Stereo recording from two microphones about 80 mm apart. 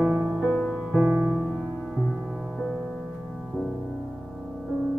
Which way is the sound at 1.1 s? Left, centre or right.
Right.